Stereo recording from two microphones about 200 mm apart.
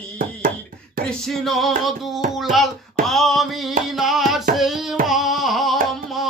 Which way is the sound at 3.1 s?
Centre (ahead or behind).